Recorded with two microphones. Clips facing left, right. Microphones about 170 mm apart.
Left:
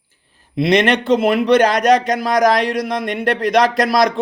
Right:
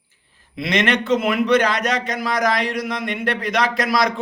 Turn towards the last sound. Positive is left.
turn(degrees=35)  # may be behind; listen again after turning